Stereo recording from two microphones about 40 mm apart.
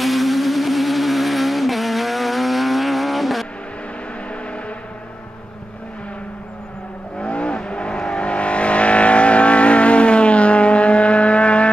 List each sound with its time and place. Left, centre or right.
0.0 s vehicle: centre
7.2 s vehicle: left